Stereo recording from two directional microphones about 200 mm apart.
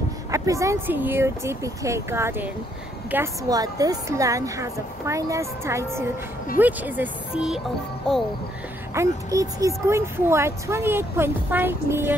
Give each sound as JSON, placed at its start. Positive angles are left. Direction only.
{"t": 0.3, "sound": "speech", "side_deg": -15}
{"t": 8.9, "sound": "speech", "side_deg": -15}